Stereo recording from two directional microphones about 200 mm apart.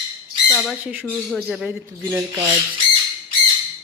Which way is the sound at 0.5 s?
Centre (ahead or behind).